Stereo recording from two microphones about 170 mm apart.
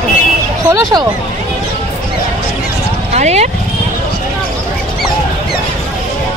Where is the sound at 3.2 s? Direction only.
40° right (ahead or behind).